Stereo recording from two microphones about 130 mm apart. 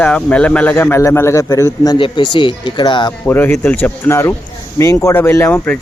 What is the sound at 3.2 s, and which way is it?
Speech, 15° left (ahead or behind).